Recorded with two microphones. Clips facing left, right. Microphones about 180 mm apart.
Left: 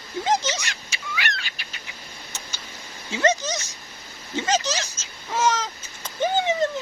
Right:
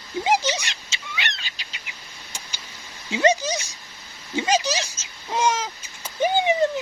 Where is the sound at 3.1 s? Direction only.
15° right (ahead or behind).